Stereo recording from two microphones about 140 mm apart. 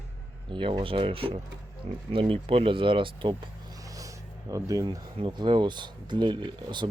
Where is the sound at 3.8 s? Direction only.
25° right (ahead or behind).